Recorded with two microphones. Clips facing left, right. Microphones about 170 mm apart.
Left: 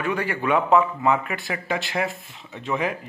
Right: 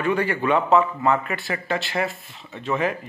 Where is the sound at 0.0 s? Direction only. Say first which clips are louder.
Right 3 dB; 10° left (ahead or behind).